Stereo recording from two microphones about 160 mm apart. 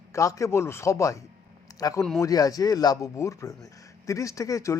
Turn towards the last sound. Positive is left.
turn(degrees=20)  # may be behind; listen again after turning